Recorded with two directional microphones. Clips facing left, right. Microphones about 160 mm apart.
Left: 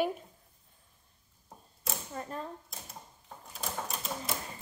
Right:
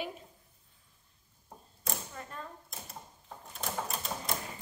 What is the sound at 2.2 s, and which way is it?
Speech, 40° left (ahead or behind).